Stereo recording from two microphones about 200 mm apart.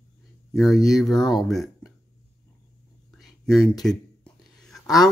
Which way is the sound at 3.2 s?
Centre (ahead or behind).